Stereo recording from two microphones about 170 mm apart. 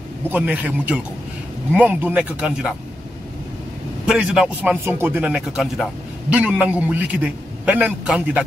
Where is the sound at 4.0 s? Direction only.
5° right (ahead or behind).